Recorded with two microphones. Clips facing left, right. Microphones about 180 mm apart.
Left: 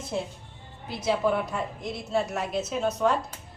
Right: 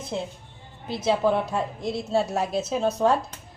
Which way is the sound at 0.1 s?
20° right (ahead or behind).